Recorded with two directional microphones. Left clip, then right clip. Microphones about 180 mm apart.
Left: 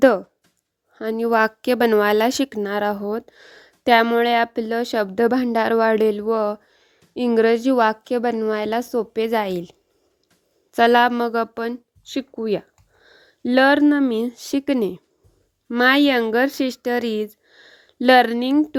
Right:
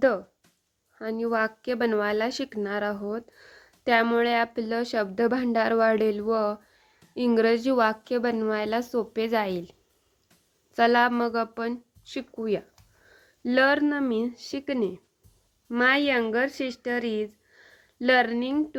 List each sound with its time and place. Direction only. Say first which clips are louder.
0.9 s a woman's voice: left 8 dB; 50° left (ahead or behind)